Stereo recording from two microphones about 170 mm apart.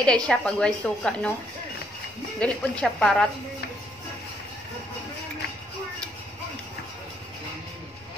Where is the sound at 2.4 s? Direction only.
5° left (ahead or behind).